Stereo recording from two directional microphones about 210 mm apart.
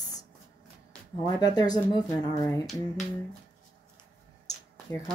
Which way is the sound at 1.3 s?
20° left (ahead or behind).